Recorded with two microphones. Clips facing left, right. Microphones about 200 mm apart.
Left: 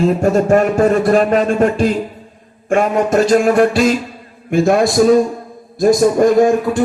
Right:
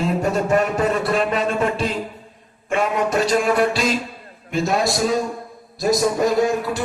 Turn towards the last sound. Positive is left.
turn(degrees=50)  # may be behind; listen again after turning